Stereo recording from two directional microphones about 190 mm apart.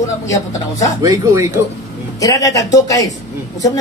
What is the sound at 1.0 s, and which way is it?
Speech, 20° right (ahead or behind).